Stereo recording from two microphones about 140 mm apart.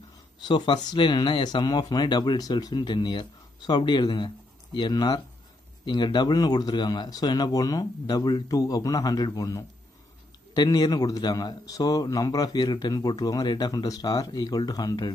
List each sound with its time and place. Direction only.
0.4 s a man's voice: 35° left (ahead or behind)